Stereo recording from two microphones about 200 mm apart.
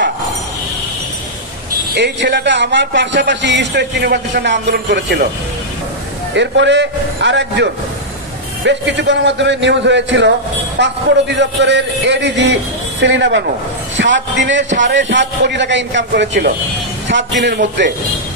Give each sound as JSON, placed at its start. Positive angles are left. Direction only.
{"t": 2.0, "sound": "a man's voice", "side_deg": -60}
{"t": 6.3, "sound": "a man's voice", "side_deg": -60}
{"t": 16.1, "sound": "speech", "side_deg": -50}
{"t": 17.1, "sound": "a man's voice", "side_deg": -65}